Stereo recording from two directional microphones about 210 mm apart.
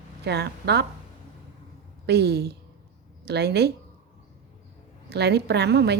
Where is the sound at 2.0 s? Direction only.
50° right (ahead or behind).